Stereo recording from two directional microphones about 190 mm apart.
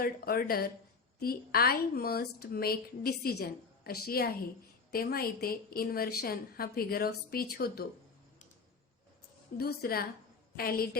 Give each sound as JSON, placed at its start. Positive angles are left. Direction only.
{"t": 0.0, "sound": "speech", "side_deg": 50}
{"t": 9.6, "sound": "speech", "side_deg": 55}